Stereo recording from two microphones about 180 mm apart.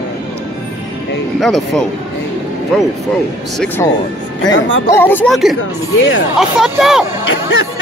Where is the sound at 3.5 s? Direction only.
5° left (ahead or behind).